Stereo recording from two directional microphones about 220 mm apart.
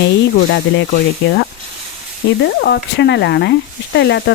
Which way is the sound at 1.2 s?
55° left (ahead or behind).